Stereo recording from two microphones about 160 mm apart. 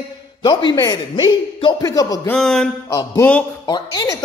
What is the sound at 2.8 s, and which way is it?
Speech, 20° left (ahead or behind).